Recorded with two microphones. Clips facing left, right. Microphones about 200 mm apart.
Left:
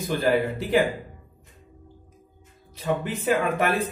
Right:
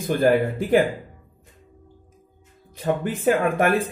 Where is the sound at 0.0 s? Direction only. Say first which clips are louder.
Right 4 dB; 50° right (ahead or behind).